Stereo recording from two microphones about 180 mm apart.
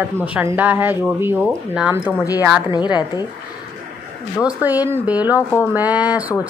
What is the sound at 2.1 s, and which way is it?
A woman's voice, 20° left (ahead or behind).